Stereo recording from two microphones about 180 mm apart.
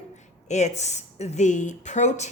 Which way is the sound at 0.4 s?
40° left (ahead or behind).